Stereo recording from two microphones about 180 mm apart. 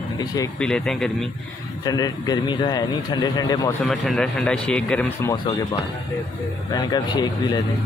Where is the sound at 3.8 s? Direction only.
Centre (ahead or behind).